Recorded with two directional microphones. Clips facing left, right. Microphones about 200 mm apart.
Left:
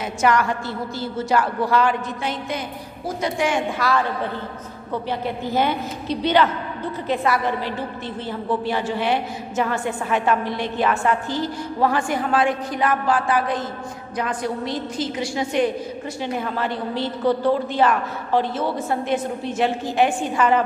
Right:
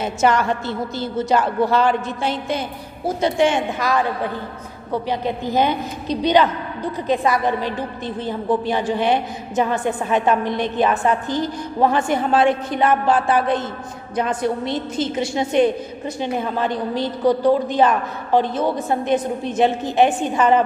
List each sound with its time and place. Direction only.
0.0 s a woman's voice: 25° right (ahead or behind)